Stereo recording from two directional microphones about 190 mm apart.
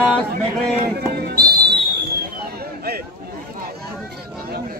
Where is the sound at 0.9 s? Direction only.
55° right (ahead or behind).